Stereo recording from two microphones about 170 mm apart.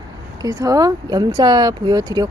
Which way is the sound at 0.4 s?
20° right (ahead or behind).